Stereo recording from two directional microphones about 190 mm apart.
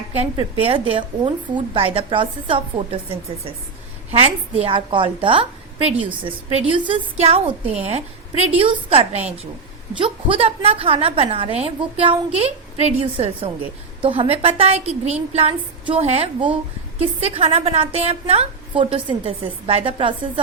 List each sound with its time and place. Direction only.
0.2 s a woman's voice: 30° right (ahead or behind)
4.1 s a woman's voice: 30° right (ahead or behind)